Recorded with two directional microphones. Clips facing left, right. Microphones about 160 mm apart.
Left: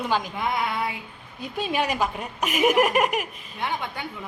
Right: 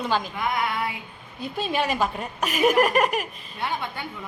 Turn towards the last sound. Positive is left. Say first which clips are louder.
# even
turn(degrees=15)  # may be behind; listen again after turning